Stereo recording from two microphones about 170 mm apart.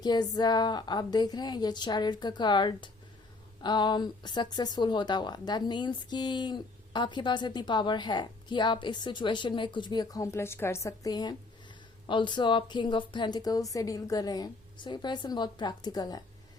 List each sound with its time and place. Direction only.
0.0 s a woman's voice: 25° left (ahead or behind)